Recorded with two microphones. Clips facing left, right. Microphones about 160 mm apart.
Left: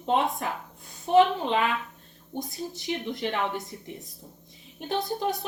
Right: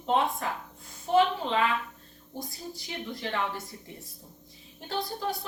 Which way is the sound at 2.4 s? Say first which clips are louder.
Left 5 dB; 20° left (ahead or behind).